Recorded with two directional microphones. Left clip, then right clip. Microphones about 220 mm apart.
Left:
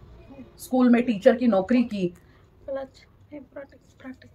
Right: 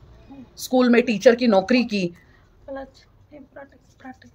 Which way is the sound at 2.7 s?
5° left (ahead or behind).